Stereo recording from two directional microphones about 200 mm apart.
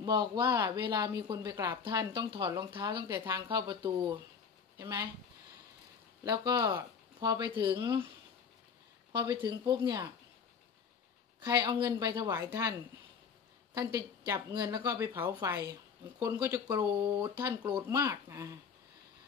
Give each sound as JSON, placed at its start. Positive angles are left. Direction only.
{"t": 0.0, "sound": "speech", "side_deg": -20}
{"t": 6.2, "sound": "speech", "side_deg": -20}
{"t": 9.1, "sound": "speech", "side_deg": -20}
{"t": 11.4, "sound": "speech", "side_deg": -20}
{"t": 13.9, "sound": "speech", "side_deg": -15}